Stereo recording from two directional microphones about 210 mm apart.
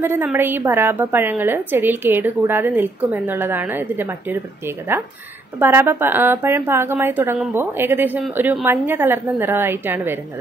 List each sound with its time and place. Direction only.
0.0 s a woman's voice: 10° right (ahead or behind)